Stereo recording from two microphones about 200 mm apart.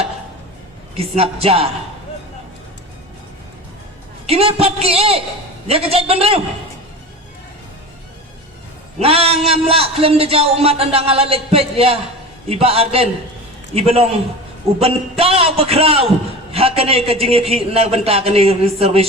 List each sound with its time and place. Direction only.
0.9 s a man's voice: 30° right (ahead or behind)
4.3 s a man's voice: 30° right (ahead or behind)
9.0 s a man's voice: 30° right (ahead or behind)